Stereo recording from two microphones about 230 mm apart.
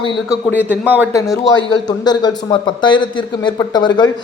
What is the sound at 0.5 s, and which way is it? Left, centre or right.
A man's voice, centre.